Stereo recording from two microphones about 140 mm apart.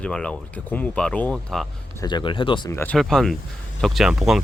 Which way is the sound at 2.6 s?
15° left (ahead or behind).